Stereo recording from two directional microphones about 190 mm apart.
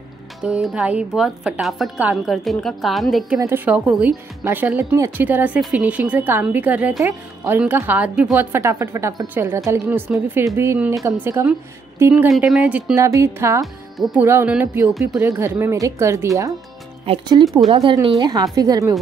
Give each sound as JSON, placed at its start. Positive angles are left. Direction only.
{"t": 0.4, "sound": "speech", "side_deg": -5}
{"t": 3.3, "sound": "speech", "side_deg": -10}
{"t": 13.9, "sound": "speech", "side_deg": 0}
{"t": 14.2, "sound": "speech", "side_deg": -10}
{"t": 17.0, "sound": "a woman's voice", "side_deg": -30}